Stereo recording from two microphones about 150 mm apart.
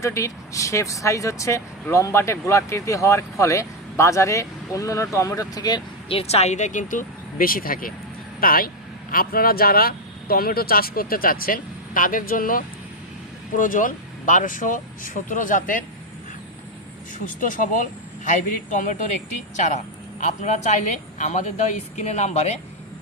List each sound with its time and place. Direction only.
0.0 s speech: 20° left (ahead or behind); by 15.8 s 65° left (ahead or behind)
17.4 s speech: 60° left (ahead or behind)